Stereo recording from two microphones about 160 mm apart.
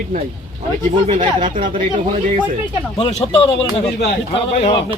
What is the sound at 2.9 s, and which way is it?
Speech, 35° left (ahead or behind).